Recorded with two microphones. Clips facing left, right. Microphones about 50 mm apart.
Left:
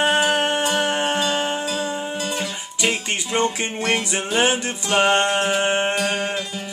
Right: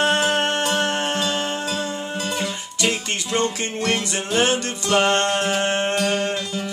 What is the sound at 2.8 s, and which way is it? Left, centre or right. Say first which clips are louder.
Music: left 1 dB; centre.